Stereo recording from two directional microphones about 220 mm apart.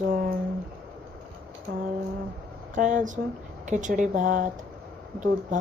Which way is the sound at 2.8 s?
35° right (ahead or behind).